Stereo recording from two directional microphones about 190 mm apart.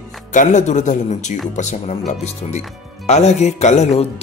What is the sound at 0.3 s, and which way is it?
Speech, 40° left (ahead or behind).